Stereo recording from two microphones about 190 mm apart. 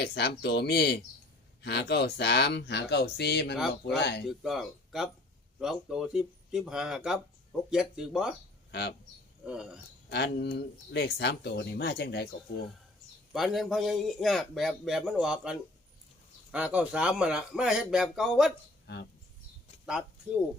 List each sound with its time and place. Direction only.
0.0 s speech: 60° left (ahead or behind)
4.3 s a man's voice: centre (ahead or behind)
9.5 s a man's voice: 5° right (ahead or behind)
10.1 s speech: 60° left (ahead or behind)
13.3 s a man's voice: centre (ahead or behind)
19.8 s speech: 5° right (ahead or behind)